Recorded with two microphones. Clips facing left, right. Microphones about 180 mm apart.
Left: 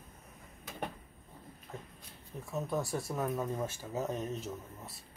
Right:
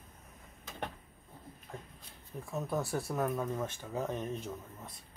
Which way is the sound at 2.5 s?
Centre (ahead or behind).